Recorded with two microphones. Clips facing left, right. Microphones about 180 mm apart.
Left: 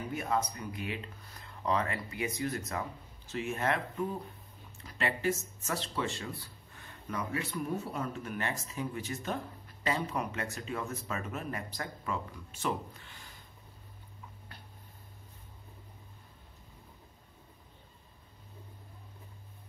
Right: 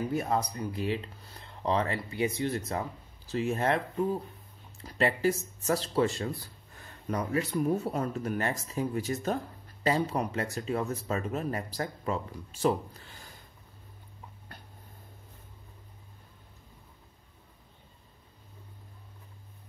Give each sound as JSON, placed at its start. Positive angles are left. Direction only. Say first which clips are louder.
{"t": 0.1, "sound": "speech", "louder": "right 3 dB", "side_deg": -35}